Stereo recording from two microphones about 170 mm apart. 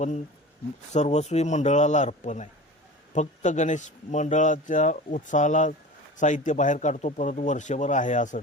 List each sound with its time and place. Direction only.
0.9 s speech: 40° left (ahead or behind)